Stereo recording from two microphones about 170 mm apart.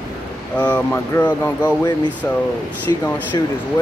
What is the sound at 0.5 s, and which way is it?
Speech, 5° left (ahead or behind).